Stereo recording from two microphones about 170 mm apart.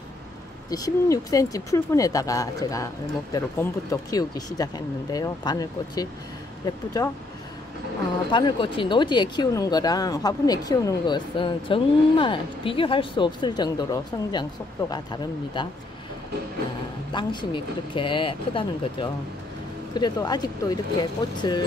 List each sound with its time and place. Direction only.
0.7 s speech: 20° left (ahead or behind)
8.3 s speech: 25° left (ahead or behind)
17.1 s speech: 25° left (ahead or behind)